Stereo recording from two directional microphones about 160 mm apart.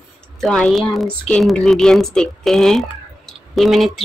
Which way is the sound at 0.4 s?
5° left (ahead or behind).